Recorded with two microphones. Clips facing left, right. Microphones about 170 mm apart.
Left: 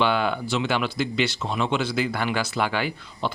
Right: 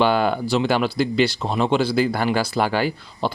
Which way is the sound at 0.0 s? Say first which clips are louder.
Right 4 dB; 40° right (ahead or behind).